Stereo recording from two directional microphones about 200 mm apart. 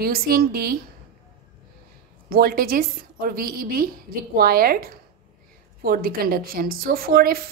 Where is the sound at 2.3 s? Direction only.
50° right (ahead or behind).